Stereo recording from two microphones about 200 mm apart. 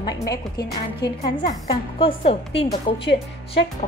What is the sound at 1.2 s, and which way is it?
A woman's voice, 25° left (ahead or behind).